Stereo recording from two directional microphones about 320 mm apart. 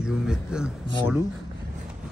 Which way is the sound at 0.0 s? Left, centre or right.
Centre.